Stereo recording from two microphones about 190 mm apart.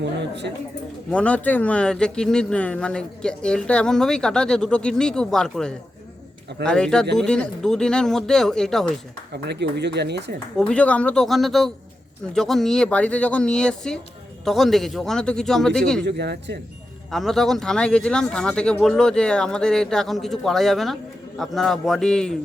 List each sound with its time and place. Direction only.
0.0 s speech: 65° right (ahead or behind)
1.1 s speech: 5° left (ahead or behind)
9.3 s speech: 60° right (ahead or behind)
10.6 s speech: 5° left (ahead or behind)
16.0 s speech: 60° right (ahead or behind)
17.1 s speech: centre (ahead or behind)